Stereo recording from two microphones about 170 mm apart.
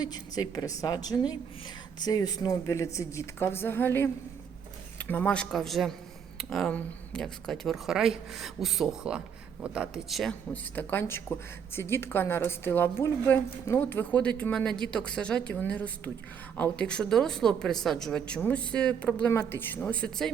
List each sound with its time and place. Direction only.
0.0 s a woman's voice: 25° left (ahead or behind); by 20.3 s 5° left (ahead or behind)